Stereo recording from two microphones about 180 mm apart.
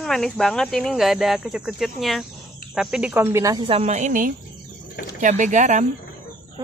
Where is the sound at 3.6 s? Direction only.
35° right (ahead or behind).